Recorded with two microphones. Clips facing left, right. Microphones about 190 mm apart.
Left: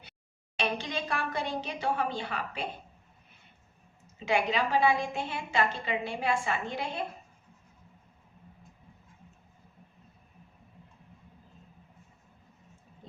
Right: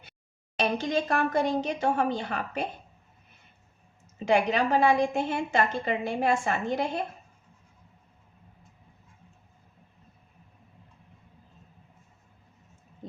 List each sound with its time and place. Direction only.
0.5 s a woman's voice: 45° right (ahead or behind)
4.3 s a woman's voice: 45° right (ahead or behind)